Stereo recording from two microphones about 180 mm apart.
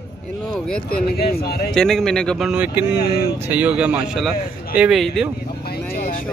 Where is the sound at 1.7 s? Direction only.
5° left (ahead or behind).